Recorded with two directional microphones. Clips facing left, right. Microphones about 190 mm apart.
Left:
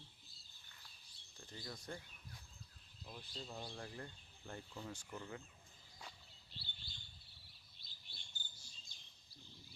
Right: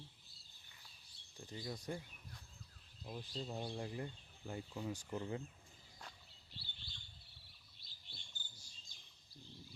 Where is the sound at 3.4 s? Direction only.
25° right (ahead or behind).